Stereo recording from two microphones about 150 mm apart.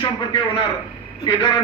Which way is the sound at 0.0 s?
30° left (ahead or behind).